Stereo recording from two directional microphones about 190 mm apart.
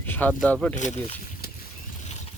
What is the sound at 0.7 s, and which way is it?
Speech, 40° left (ahead or behind).